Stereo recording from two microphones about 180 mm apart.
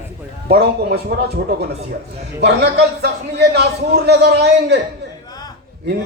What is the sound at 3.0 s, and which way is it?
A man's voice, 65° right (ahead or behind).